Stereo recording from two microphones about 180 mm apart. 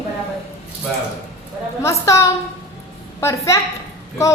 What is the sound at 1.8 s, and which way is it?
A woman's voice, 15° left (ahead or behind).